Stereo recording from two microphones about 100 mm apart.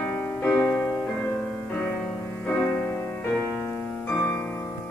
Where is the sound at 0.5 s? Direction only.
10° left (ahead or behind).